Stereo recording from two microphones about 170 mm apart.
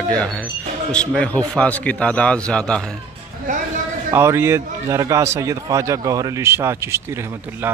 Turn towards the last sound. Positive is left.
turn(degrees=-15)  # may be behind; listen again after turning